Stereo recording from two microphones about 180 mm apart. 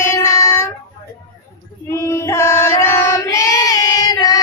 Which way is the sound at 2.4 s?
15° left (ahead or behind).